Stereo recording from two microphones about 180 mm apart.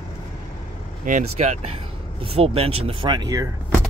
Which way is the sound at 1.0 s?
45° right (ahead or behind).